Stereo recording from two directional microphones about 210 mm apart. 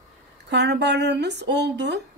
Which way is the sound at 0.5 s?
55° right (ahead or behind).